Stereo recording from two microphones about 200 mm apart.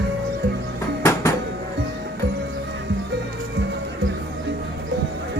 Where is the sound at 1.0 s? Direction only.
15° left (ahead or behind).